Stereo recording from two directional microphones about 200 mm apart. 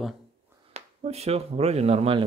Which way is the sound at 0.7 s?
30° right (ahead or behind).